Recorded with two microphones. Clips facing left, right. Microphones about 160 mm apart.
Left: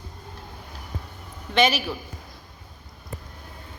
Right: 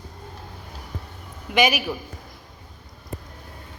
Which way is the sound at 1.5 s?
15° right (ahead or behind).